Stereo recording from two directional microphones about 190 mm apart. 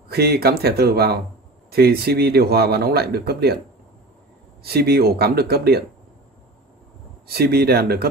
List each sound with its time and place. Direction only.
0.1 s a man's voice: 55° right (ahead or behind)
4.6 s a man's voice: 55° right (ahead or behind)
7.2 s a man's voice: 55° right (ahead or behind)